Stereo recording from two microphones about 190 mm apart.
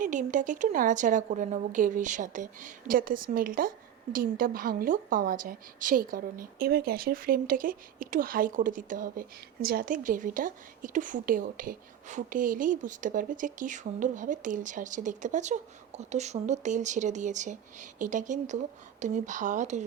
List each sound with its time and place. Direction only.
0.0 s a woman's voice: 40° right (ahead or behind)